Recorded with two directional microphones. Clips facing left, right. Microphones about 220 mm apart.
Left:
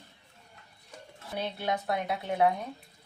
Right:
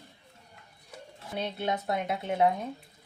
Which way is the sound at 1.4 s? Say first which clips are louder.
Right 1 dB; 20° right (ahead or behind).